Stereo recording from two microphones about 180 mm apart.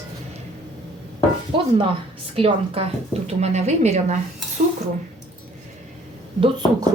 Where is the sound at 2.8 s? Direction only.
30° right (ahead or behind).